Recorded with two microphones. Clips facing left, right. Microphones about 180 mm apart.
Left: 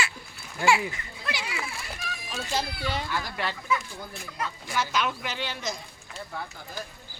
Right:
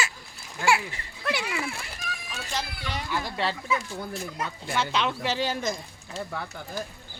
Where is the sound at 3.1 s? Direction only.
25° right (ahead or behind); by 5.7 s 50° right (ahead or behind).